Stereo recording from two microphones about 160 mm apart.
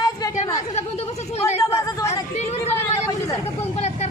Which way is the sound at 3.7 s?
45° left (ahead or behind).